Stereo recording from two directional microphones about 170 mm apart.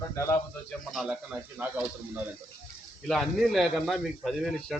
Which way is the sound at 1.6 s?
10° right (ahead or behind).